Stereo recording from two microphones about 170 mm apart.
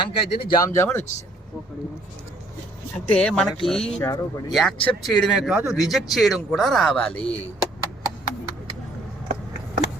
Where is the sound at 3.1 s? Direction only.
5° left (ahead or behind).